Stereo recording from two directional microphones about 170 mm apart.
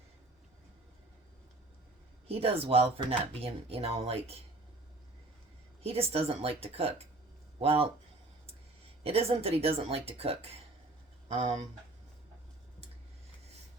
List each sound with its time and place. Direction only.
2.2 s speech: 35° right (ahead or behind)
5.8 s speech: 35° right (ahead or behind)
9.0 s speech: 35° right (ahead or behind)